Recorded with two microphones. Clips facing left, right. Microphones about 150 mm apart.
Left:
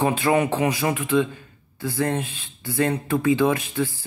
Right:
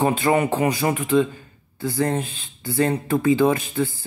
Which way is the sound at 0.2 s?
10° right (ahead or behind).